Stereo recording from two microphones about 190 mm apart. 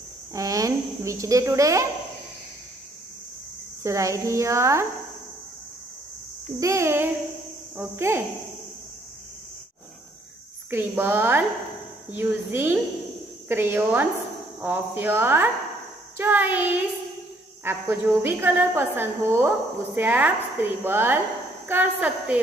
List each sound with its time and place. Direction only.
0.3 s speech: 15° right (ahead or behind)
3.8 s a woman's voice: 15° right (ahead or behind)
6.6 s a woman's voice: 15° right (ahead or behind)
10.7 s a woman's voice: 10° right (ahead or behind)